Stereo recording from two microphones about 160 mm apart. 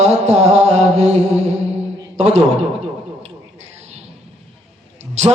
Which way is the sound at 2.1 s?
40° right (ahead or behind).